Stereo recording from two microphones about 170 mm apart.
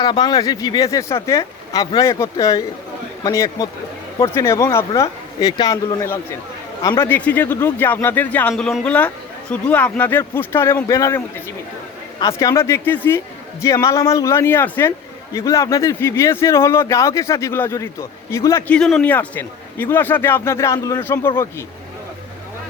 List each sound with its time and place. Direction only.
0.0 s a man's voice: 25° left (ahead or behind)
7.1 s a man's voice: 10° left (ahead or behind)
12.2 s a man's voice: 20° left (ahead or behind)
18.7 s a man's voice: 5° left (ahead or behind)